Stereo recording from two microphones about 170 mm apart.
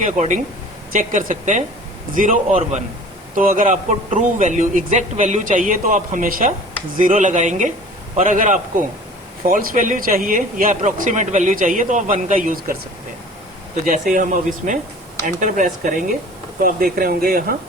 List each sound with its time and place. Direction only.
0.0 s speech: 45° right (ahead or behind)
13.8 s speech: 50° right (ahead or behind)